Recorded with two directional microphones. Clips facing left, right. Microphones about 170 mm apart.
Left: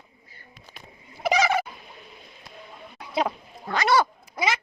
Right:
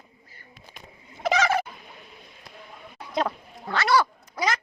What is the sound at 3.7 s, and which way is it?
Cat, 20° left (ahead or behind).